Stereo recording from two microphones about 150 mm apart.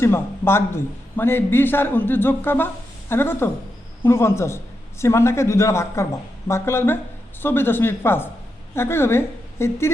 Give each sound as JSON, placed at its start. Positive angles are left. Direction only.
{"t": 0.0, "sound": "a man's voice", "side_deg": 15}